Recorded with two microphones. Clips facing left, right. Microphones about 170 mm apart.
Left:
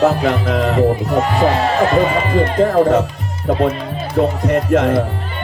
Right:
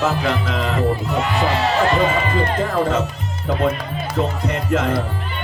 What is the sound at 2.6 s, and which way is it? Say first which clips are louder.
Speech: left 10 dB; 50° left (ahead or behind).